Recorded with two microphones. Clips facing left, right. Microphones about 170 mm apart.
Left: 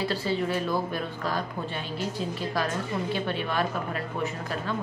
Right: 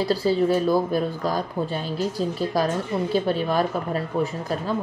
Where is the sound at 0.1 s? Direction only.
40° right (ahead or behind).